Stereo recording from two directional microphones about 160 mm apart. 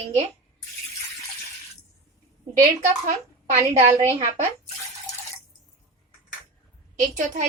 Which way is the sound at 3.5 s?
15° right (ahead or behind).